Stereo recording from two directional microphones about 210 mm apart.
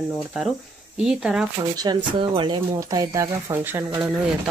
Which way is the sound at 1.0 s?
5° right (ahead or behind).